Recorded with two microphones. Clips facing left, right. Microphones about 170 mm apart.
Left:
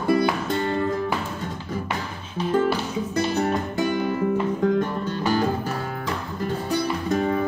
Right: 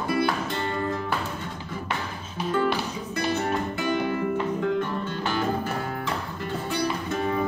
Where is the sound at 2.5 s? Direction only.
40° left (ahead or behind).